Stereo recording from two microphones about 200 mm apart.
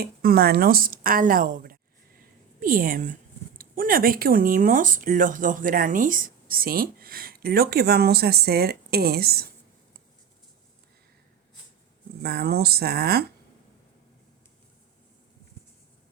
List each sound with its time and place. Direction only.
0.0 s speech: 50° right (ahead or behind)
12.2 s speech: 50° right (ahead or behind)